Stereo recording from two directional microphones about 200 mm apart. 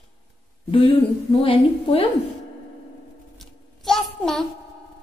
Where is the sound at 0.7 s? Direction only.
25° left (ahead or behind).